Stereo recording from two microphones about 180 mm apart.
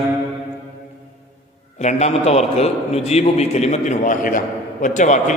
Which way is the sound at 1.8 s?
35° left (ahead or behind).